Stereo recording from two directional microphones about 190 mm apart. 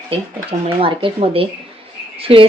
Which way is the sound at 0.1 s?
30° right (ahead or behind).